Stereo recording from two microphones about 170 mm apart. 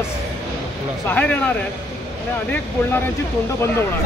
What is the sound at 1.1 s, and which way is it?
Speech, 10° left (ahead or behind).